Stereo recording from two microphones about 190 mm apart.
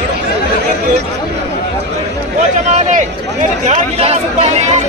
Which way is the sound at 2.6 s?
35° right (ahead or behind).